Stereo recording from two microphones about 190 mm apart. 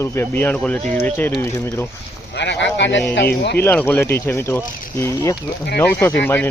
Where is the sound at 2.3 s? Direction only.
70° left (ahead or behind).